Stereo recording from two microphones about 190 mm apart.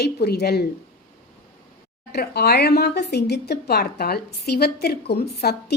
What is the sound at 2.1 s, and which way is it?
Speech, 55° left (ahead or behind).